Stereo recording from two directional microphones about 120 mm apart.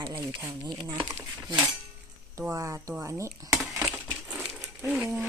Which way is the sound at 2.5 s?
25° right (ahead or behind).